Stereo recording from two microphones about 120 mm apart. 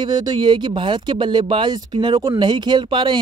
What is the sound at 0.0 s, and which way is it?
Speech, 40° right (ahead or behind).